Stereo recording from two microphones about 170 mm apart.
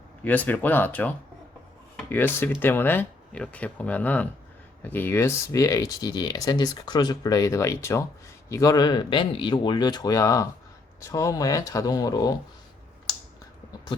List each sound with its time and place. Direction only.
0.3 s speech: 10° left (ahead or behind)